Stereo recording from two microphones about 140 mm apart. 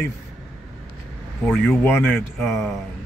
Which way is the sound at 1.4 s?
10° left (ahead or behind).